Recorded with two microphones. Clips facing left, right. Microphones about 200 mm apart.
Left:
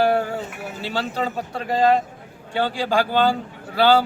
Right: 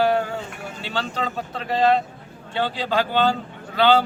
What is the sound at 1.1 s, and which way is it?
Speech, 10° left (ahead or behind).